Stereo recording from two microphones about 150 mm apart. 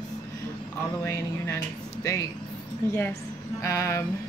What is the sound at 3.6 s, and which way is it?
Speech, 20° left (ahead or behind).